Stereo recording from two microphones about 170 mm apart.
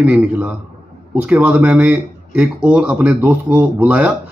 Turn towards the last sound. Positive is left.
turn(degrees=-5)  # may be behind; listen again after turning